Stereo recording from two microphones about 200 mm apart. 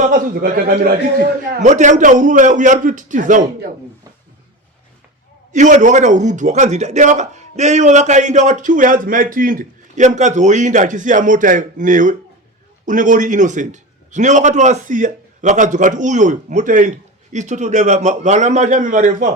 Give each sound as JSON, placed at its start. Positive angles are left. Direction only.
{"t": 0.1, "sound": "a man's voice", "side_deg": -45}
{"t": 5.5, "sound": "a man's voice", "side_deg": -40}